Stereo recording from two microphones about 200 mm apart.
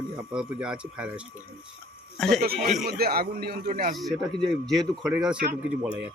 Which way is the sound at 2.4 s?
50° right (ahead or behind).